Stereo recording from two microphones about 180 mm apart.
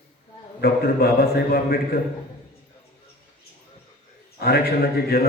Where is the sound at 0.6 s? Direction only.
55° left (ahead or behind).